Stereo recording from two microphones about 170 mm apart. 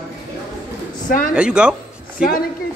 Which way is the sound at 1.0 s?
55° left (ahead or behind).